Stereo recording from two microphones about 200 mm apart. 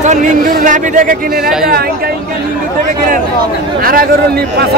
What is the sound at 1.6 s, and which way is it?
Speech, 50° right (ahead or behind).